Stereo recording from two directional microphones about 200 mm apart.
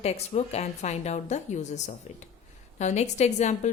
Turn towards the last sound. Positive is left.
turn(degrees=35)  # may be behind; listen again after turning